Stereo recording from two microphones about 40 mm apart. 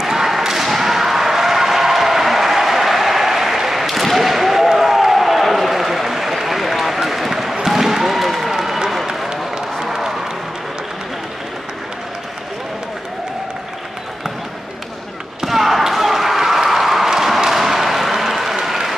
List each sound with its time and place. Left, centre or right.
0.0 s basketball bounce: centre
9.3 s a sound: centre
15.4 s slam: centre